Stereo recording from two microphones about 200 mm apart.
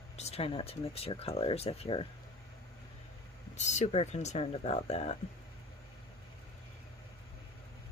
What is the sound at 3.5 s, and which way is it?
Speech, 35° left (ahead or behind).